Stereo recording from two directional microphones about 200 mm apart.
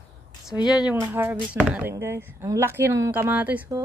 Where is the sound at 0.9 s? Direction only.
10° right (ahead or behind).